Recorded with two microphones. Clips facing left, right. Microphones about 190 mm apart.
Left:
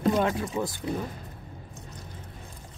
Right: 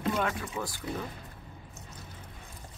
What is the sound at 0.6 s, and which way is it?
Speech, 20° left (ahead or behind).